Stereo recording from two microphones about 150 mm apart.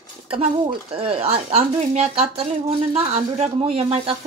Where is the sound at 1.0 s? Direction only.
40° right (ahead or behind).